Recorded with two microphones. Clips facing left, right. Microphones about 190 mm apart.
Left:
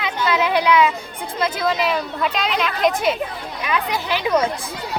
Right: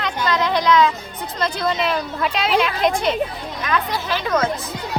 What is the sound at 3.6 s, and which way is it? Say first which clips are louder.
Speech: even; 10° left (ahead or behind).